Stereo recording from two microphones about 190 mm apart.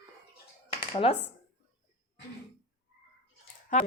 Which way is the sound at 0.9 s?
30° left (ahead or behind).